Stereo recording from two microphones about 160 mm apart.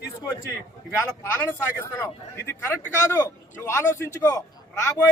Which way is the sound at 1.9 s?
15° left (ahead or behind).